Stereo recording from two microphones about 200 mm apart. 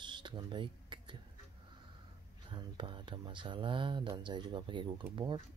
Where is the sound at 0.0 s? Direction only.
25° right (ahead or behind).